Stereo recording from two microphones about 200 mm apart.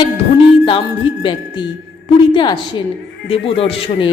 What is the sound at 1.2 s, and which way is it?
Speech, 25° left (ahead or behind).